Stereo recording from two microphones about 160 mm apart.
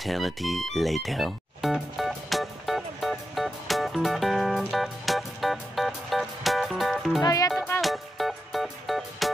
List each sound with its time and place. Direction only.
0.0 s music: centre (ahead or behind)
7.2 s music: 20° left (ahead or behind)
7.8 s music: centre (ahead or behind)